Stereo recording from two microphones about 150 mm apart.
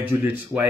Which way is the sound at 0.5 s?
25° right (ahead or behind).